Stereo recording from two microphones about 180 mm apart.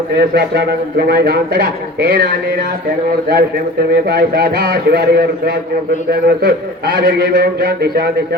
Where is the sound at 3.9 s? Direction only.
60° right (ahead or behind).